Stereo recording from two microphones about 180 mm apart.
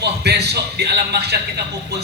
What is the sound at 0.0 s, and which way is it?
A man's voice, 65° right (ahead or behind).